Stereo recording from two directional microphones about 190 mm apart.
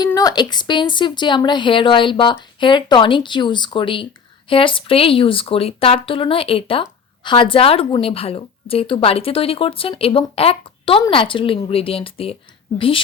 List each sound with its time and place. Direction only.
0.0 s a woman's voice: 20° left (ahead or behind)